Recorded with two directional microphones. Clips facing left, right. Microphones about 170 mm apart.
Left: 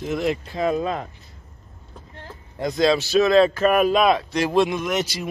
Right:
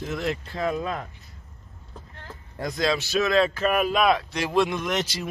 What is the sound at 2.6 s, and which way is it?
Speech, 25° left (ahead or behind).